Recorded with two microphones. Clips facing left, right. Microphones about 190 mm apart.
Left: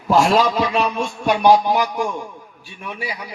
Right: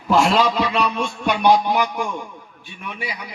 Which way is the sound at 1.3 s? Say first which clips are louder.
Left 2 dB; 35° left (ahead or behind).